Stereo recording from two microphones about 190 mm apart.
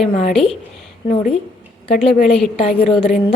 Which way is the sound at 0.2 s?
35° left (ahead or behind).